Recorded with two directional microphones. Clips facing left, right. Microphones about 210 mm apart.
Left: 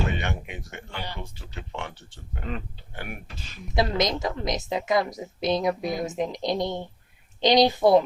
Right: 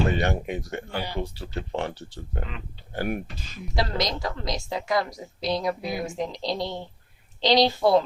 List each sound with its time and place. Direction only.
0.1 s speech: 35° right (ahead or behind)
3.8 s a woman's voice: 20° left (ahead or behind)